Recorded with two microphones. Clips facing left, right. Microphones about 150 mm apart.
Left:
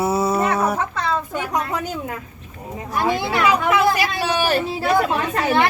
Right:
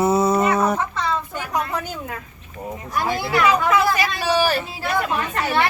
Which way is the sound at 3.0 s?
25° left (ahead or behind).